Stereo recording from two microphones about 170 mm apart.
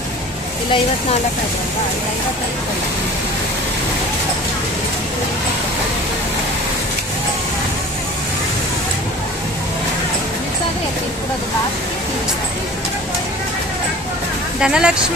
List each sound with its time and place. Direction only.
14.6 s speech: 5° right (ahead or behind)